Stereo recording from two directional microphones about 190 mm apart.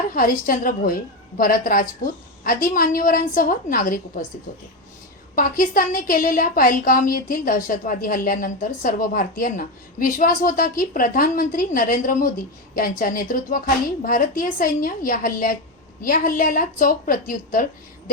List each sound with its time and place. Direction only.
0.1 s a woman's voice: 45° left (ahead or behind)
5.3 s a woman's voice: 45° left (ahead or behind)